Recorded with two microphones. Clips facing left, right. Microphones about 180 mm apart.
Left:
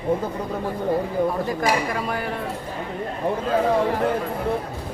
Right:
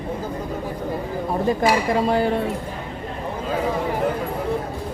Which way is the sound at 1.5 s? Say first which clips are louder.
Right 4 dB; 25° right (ahead or behind).